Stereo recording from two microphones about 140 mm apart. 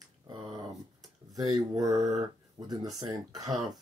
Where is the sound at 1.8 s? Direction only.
25° right (ahead or behind).